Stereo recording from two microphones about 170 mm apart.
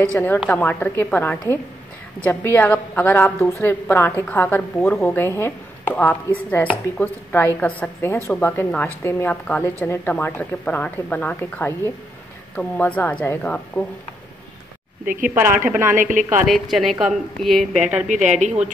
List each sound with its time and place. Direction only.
0.1 s a woman's voice: 10° left (ahead or behind)
15.0 s speech: 50° right (ahead or behind)
15.6 s a woman's voice: 10° right (ahead or behind)
16.0 s speech: 50° right (ahead or behind)
16.4 s a woman's voice: centre (ahead or behind)
18.0 s speech: 45° right (ahead or behind)